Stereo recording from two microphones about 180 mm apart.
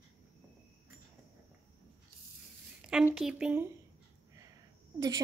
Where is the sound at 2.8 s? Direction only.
5° right (ahead or behind).